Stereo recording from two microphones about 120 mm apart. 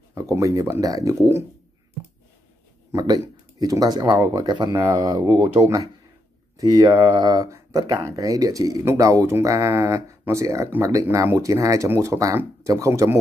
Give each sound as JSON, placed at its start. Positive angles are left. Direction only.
{"t": 0.1, "sound": "speech", "side_deg": -25}
{"t": 2.9, "sound": "speech", "side_deg": -35}
{"t": 4.5, "sound": "speech", "side_deg": -40}
{"t": 4.7, "sound": "speech", "side_deg": -25}
{"t": 6.5, "sound": "speech", "side_deg": -35}